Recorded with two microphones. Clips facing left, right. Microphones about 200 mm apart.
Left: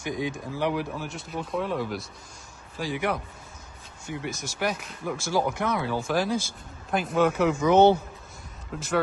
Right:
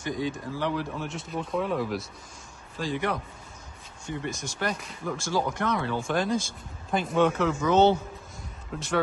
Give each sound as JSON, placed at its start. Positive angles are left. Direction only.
{"t": 0.0, "sound": "speech", "side_deg": 15}
{"t": 0.9, "sound": "speech", "side_deg": 0}
{"t": 7.4, "sound": "speech", "side_deg": 15}
{"t": 8.7, "sound": "speech", "side_deg": 5}